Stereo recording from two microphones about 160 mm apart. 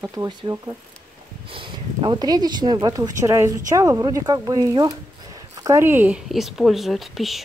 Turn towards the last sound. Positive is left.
turn(degrees=0)  # may be behind; listen again after turning